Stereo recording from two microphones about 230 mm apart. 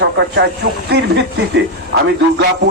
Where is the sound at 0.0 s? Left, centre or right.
Right.